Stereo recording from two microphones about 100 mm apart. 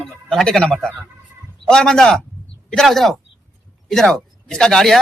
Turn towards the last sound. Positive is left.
turn(degrees=5)  # may be behind; listen again after turning